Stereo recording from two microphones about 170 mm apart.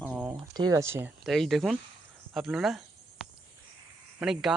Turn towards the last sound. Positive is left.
turn(degrees=-5)  # may be behind; listen again after turning